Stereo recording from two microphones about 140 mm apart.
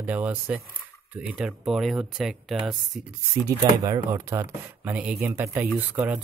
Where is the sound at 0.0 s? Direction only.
10° right (ahead or behind).